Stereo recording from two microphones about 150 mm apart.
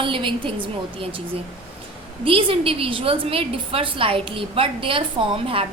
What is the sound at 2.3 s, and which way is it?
A woman's voice, 40° right (ahead or behind).